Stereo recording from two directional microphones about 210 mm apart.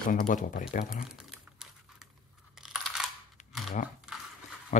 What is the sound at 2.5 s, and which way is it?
Crunch, centre (ahead or behind).